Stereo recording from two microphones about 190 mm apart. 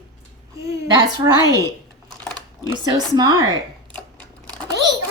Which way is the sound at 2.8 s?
20° right (ahead or behind).